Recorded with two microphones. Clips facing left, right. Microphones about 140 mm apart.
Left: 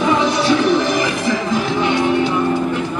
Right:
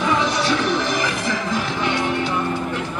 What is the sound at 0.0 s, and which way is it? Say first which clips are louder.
Music: left 4 dB; 15° left (ahead or behind).